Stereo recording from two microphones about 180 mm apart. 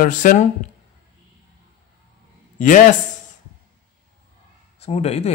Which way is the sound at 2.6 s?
45° left (ahead or behind).